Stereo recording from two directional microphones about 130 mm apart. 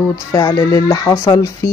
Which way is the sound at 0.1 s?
25° left (ahead or behind).